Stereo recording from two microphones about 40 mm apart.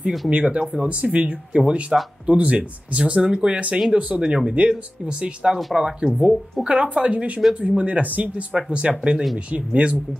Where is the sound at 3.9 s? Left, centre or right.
Right.